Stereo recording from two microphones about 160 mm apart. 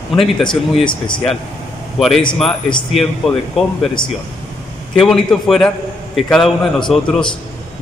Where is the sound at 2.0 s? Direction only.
Centre (ahead or behind).